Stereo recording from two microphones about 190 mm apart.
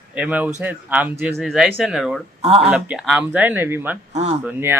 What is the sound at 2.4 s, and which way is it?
Speech, 30° right (ahead or behind).